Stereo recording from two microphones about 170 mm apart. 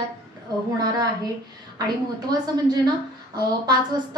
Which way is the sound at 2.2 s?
25° right (ahead or behind).